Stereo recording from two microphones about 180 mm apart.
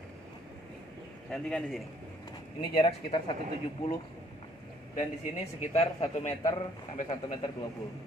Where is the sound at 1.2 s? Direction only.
5° left (ahead or behind).